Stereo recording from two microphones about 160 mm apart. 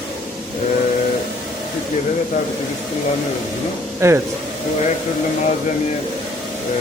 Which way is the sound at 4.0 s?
15° right (ahead or behind).